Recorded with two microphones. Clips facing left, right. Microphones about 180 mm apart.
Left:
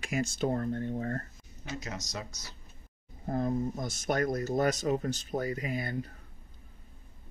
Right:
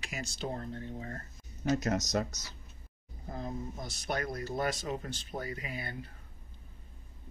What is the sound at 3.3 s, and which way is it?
Speech, 55° left (ahead or behind).